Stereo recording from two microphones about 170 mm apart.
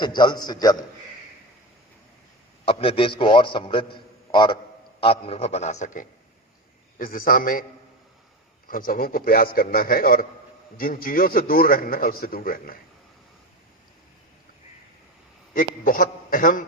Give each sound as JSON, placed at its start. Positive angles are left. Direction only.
{"t": 0.0, "sound": "a man's voice", "side_deg": 25}
{"t": 2.6, "sound": "a man's voice", "side_deg": 35}
{"t": 3.9, "sound": "a sound", "side_deg": 30}
{"t": 4.9, "sound": "a man's voice", "side_deg": 35}
{"t": 8.6, "sound": "a man's voice", "side_deg": 55}
{"t": 15.5, "sound": "a man's voice", "side_deg": 55}